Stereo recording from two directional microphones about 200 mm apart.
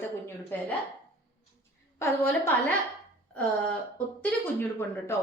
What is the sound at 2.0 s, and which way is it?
Speech, 10° left (ahead or behind).